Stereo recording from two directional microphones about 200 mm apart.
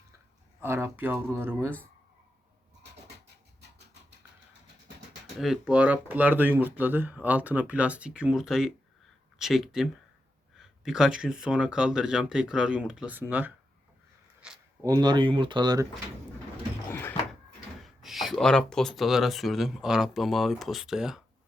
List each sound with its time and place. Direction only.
0.6 s speech: 10° right (ahead or behind)
5.4 s speech: 5° right (ahead or behind)
14.4 s a sound: 5° right (ahead or behind)
14.8 s speech: 20° right (ahead or behind)
16.9 s door: 10° left (ahead or behind)
18.0 s speech: centre (ahead or behind)